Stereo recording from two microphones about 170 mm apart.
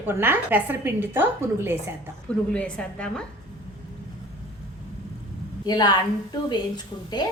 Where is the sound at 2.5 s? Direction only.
5° left (ahead or behind).